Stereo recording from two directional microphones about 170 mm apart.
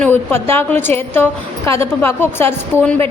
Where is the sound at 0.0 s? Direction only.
10° left (ahead or behind).